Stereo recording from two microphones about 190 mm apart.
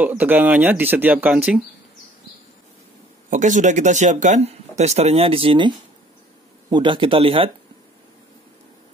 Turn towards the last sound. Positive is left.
turn(degrees=-30)  # may be behind; listen again after turning